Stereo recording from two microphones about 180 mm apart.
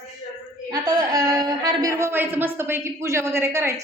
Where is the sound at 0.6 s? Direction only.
20° right (ahead or behind).